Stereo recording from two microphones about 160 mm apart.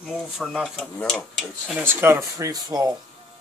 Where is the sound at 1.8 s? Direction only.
15° right (ahead or behind).